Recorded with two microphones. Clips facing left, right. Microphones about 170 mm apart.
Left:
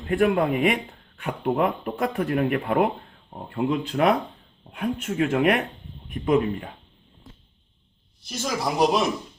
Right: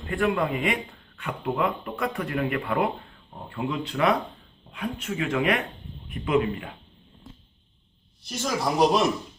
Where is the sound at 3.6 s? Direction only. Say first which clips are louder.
Left 3 dB; 55° left (ahead or behind).